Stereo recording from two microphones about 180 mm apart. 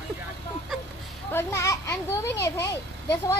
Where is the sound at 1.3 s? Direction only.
15° left (ahead or behind).